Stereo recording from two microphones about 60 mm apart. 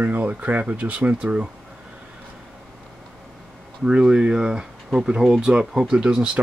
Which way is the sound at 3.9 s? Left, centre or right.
Centre.